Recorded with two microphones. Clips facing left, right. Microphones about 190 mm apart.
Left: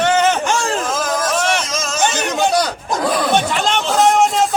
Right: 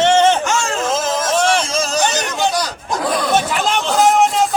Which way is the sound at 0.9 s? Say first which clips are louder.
Right 1 dB; 25° right (ahead or behind).